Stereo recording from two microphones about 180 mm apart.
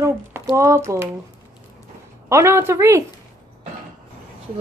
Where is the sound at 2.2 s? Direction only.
15° right (ahead or behind).